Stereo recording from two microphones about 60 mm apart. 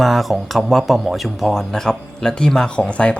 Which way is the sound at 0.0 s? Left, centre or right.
Centre.